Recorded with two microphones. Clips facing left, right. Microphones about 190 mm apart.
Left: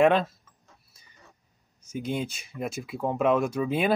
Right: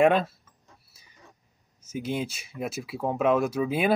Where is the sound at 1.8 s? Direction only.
5° right (ahead or behind).